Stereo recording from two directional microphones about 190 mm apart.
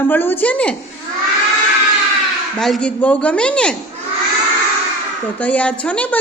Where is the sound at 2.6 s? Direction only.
5° left (ahead or behind).